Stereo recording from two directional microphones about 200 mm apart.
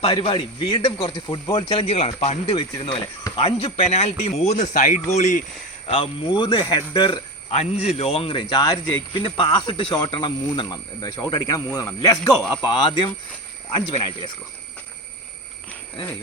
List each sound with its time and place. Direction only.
0.0 s speech: 25° left (ahead or behind)
5.9 s speech: 25° left (ahead or behind)